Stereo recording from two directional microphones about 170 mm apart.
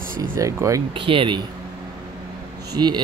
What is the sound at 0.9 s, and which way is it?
Speech, 30° right (ahead or behind).